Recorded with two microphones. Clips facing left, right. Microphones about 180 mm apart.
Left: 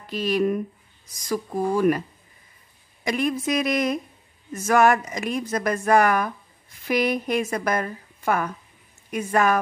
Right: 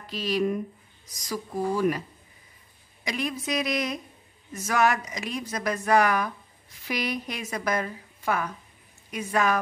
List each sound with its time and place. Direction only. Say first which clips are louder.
0.0 s a woman's voice: left 4 dB; 55° left (ahead or behind)